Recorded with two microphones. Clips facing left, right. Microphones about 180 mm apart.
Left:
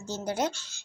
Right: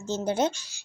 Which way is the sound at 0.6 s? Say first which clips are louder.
Even; 10° right (ahead or behind).